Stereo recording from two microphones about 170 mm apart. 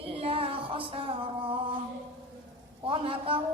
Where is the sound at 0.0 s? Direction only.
35° right (ahead or behind).